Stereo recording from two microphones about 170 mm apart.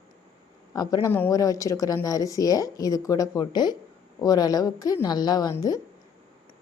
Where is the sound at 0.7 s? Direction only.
20° left (ahead or behind).